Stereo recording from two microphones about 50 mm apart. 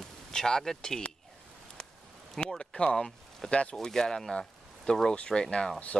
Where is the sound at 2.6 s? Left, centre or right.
Centre.